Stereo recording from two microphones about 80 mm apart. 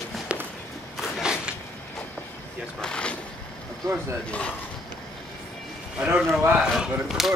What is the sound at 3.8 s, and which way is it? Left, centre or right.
Speech, right.